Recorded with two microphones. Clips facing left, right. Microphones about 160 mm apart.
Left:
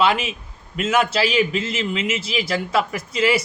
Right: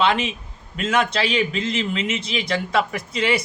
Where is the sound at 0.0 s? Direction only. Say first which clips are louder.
Left 1 dB; 5° left (ahead or behind).